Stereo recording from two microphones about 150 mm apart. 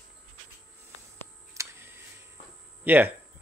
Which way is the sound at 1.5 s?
15° right (ahead or behind).